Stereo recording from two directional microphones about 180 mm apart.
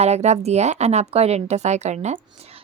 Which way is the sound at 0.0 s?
40° right (ahead or behind).